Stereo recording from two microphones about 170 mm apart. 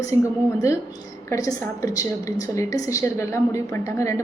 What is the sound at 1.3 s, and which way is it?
A woman's voice, 20° left (ahead or behind).